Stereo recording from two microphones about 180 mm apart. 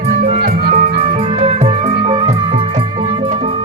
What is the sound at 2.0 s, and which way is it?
Music, 30° right (ahead or behind).